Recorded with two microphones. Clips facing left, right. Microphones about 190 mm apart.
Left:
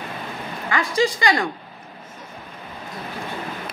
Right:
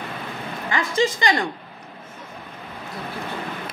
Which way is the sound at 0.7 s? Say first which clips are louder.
Left 1 dB; 25° right (ahead or behind).